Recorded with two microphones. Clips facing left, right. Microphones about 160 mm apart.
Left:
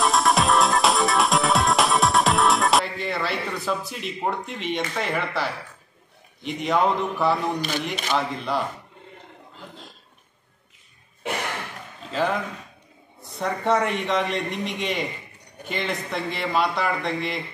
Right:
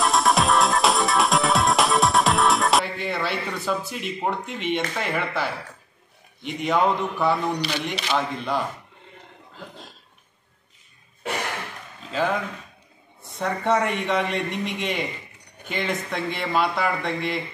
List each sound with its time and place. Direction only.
0.0 s music: centre (ahead or behind)
6.4 s a man's voice: centre (ahead or behind)
12.0 s a man's voice: centre (ahead or behind)